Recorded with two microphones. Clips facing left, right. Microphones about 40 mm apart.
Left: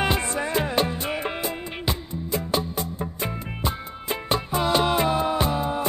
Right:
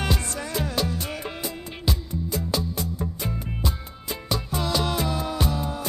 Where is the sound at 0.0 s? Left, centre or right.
Left.